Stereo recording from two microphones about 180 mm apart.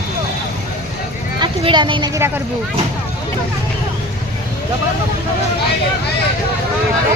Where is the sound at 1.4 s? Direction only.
25° right (ahead or behind).